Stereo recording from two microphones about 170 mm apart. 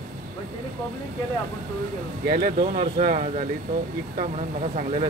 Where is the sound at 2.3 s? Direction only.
50° right (ahead or behind).